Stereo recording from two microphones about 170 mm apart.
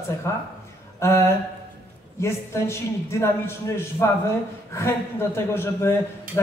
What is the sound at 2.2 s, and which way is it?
A man's voice, 15° left (ahead or behind).